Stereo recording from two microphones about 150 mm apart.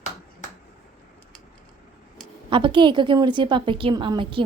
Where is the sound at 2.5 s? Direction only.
35° right (ahead or behind).